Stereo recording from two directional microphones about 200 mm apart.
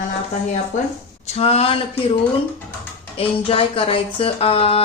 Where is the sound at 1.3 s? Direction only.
30° left (ahead or behind).